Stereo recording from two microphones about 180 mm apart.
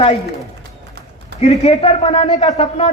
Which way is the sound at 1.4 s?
40° left (ahead or behind).